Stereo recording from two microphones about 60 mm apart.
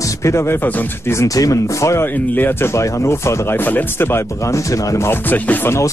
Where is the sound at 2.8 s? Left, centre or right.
Left.